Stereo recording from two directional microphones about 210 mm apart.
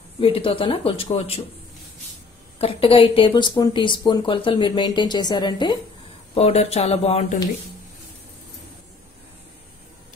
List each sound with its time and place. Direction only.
0.2 s speech: 25° left (ahead or behind)
2.6 s speech: 25° left (ahead or behind)